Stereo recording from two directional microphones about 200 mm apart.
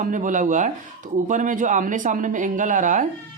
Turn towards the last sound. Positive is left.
turn(degrees=-40)  # may be behind; listen again after turning